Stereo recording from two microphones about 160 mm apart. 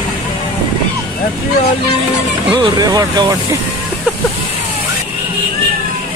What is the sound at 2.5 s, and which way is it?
Speech, 25° right (ahead or behind).